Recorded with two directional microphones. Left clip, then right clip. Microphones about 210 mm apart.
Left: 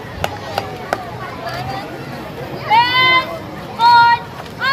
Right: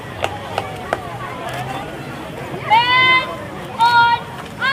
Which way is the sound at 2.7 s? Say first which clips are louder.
Left 1 dB; 50° left (ahead or behind).